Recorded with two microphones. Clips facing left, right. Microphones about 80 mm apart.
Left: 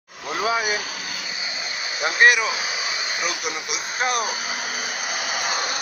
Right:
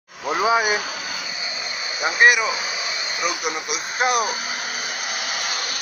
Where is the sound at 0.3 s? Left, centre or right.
Centre.